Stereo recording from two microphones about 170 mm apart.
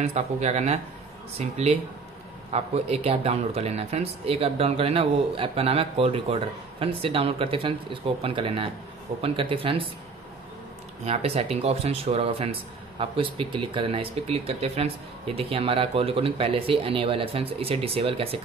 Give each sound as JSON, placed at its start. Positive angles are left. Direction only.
{"t": 0.0, "sound": "speech", "side_deg": -40}
{"t": 11.1, "sound": "speech", "side_deg": -35}